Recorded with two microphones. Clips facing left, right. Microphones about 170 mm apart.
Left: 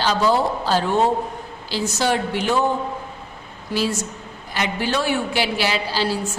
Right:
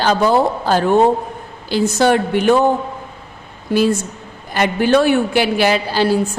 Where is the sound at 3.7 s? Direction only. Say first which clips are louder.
Right 8 dB; 50° right (ahead or behind).